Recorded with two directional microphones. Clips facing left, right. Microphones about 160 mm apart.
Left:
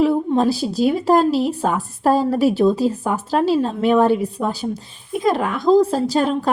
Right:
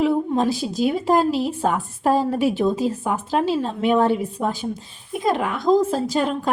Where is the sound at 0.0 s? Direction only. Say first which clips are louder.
Left 3 dB; 35° left (ahead or behind).